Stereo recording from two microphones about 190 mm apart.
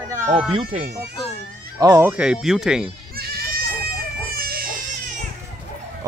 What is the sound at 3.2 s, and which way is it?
Goat, 55° right (ahead or behind).